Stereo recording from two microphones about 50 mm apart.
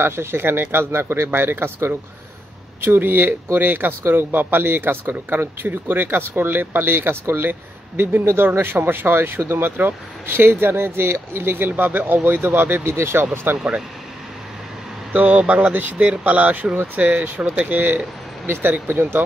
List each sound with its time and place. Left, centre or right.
0.0 s speech: right
12.8 s speech: right
15.1 s speech: right